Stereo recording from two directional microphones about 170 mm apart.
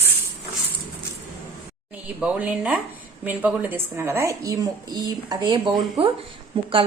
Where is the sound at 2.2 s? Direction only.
5° right (ahead or behind).